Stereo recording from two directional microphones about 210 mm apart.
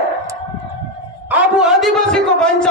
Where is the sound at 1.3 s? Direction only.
5° right (ahead or behind).